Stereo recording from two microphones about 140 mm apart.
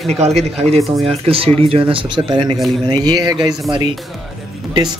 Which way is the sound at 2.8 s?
30° right (ahead or behind).